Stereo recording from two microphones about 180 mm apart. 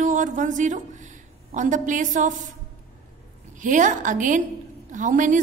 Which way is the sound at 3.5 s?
45° right (ahead or behind).